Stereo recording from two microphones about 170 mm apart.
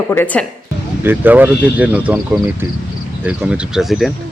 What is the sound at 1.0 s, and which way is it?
Speech, 10° right (ahead or behind).